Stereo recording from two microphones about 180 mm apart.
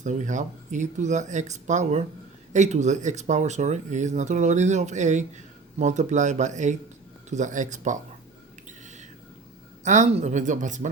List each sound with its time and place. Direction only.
0.0 s speech: 45° right (ahead or behind)
8.8 s a sound: 40° right (ahead or behind)
9.8 s speech: 40° right (ahead or behind)